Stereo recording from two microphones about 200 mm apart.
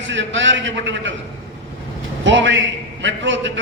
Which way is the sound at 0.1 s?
65° right (ahead or behind).